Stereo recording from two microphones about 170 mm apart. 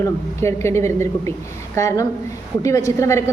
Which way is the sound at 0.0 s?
15° left (ahead or behind).